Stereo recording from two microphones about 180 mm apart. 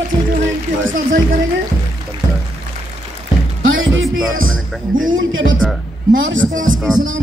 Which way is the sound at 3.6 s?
90° right.